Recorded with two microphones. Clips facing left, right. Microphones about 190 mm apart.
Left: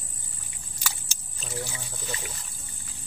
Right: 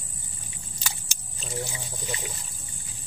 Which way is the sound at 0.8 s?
20° right (ahead or behind).